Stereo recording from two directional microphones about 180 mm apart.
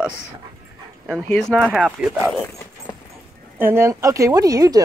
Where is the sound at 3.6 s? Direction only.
15° right (ahead or behind).